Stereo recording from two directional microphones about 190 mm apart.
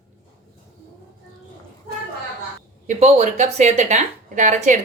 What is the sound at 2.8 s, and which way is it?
Speech, 35° right (ahead or behind).